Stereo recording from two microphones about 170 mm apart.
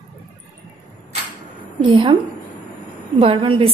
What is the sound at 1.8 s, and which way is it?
Speech, 25° right (ahead or behind).